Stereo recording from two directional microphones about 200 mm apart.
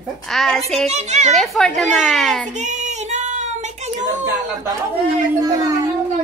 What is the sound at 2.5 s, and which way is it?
Child singing, 35° right (ahead or behind).